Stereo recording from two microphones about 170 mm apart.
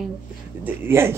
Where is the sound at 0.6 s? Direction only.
15° right (ahead or behind).